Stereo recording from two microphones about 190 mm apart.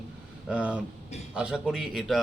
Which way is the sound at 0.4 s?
5° right (ahead or behind).